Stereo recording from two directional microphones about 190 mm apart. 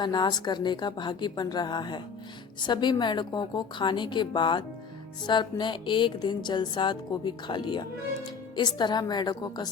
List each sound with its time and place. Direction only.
0.0 s music: 25° left (ahead or behind)